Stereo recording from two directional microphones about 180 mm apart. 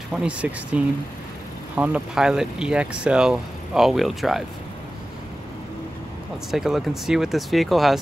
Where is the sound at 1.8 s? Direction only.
5° right (ahead or behind).